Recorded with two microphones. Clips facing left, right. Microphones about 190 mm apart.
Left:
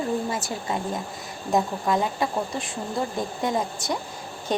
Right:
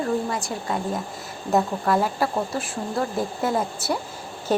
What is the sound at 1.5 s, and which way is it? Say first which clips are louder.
Speech: right 2 dB; 15° left (ahead or behind).